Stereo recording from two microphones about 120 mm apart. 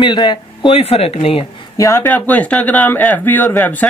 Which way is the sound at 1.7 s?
25° left (ahead or behind).